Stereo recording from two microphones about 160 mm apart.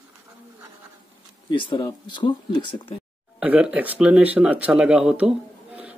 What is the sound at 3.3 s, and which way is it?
Speech, 5° right (ahead or behind).